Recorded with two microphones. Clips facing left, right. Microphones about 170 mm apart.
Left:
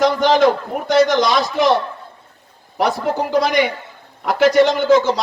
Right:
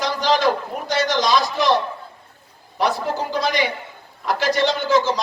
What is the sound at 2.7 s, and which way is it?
A man's voice, 55° left (ahead or behind).